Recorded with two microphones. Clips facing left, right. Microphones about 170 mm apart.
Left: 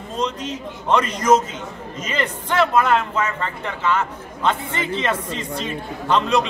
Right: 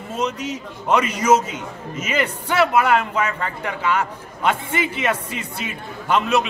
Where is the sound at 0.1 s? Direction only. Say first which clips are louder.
Right 1 dB; 10° right (ahead or behind).